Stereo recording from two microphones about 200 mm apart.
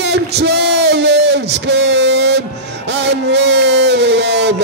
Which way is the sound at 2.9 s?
60° right (ahead or behind).